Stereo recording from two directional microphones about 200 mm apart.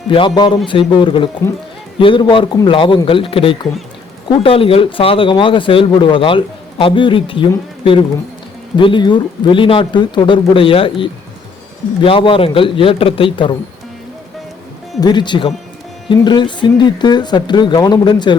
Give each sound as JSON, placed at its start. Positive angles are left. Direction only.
{"t": 0.1, "sound": "speech", "side_deg": 25}
{"t": 8.7, "sound": "speech", "side_deg": 25}
{"t": 15.0, "sound": "speech", "side_deg": 20}